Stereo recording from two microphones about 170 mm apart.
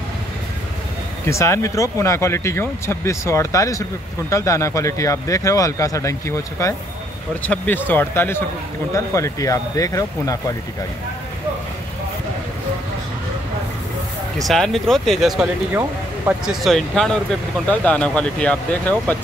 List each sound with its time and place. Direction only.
1.2 s speech: 15° left (ahead or behind)
14.5 s speech: centre (ahead or behind)